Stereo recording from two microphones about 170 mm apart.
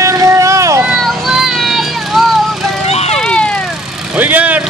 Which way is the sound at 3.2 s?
5° left (ahead or behind).